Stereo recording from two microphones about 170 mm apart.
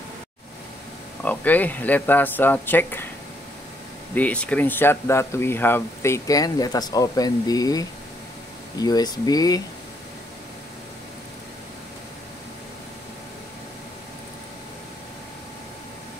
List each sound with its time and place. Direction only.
1.2 s speech: 10° left (ahead or behind)
4.1 s speech: 10° left (ahead or behind)